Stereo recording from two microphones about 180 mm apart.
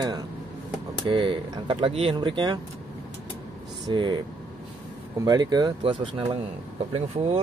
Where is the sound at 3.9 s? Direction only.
25° right (ahead or behind).